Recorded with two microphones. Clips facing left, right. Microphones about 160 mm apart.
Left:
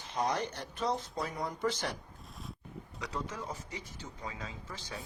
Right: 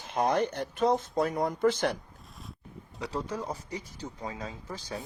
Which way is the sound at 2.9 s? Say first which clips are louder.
Right 6 dB; 30° right (ahead or behind).